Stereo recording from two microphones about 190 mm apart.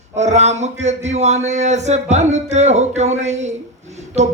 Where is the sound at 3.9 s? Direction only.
35° right (ahead or behind).